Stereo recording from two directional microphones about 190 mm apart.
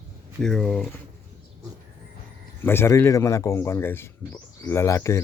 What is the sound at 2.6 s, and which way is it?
Speech, 10° left (ahead or behind).